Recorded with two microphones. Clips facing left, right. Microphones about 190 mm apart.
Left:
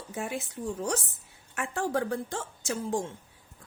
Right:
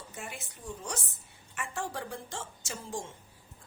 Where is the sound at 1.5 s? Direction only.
60° left (ahead or behind).